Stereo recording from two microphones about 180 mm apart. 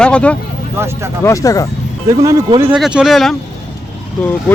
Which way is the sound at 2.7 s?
5° right (ahead or behind).